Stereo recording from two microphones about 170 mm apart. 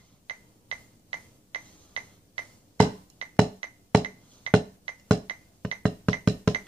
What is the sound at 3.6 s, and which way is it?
Music, 35° right (ahead or behind).